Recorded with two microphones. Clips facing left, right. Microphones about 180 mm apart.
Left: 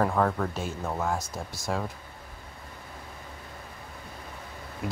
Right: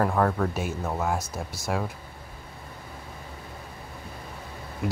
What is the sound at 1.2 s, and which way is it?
Speech, 15° left (ahead or behind).